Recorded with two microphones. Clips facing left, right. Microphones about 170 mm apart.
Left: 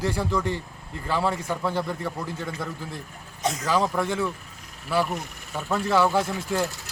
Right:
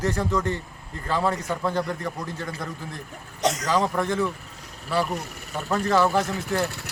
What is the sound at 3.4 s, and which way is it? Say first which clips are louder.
Speech: right 3 dB; 80° right.